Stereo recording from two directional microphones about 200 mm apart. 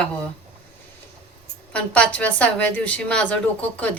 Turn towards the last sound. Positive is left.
turn(degrees=5)  # may be behind; listen again after turning